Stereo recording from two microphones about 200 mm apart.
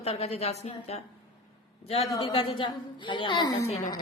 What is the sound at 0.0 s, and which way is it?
A woman's voice, 30° left (ahead or behind).